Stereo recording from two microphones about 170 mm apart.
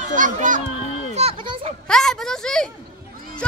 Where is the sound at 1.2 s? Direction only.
35° right (ahead or behind).